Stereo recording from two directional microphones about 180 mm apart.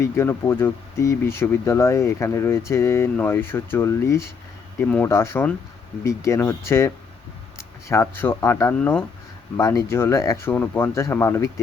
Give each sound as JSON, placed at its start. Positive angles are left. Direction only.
{"t": 0.0, "sound": "speech", "side_deg": 15}